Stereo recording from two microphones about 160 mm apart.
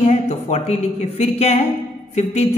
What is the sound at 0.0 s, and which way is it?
A woman's voice, 45° left (ahead or behind).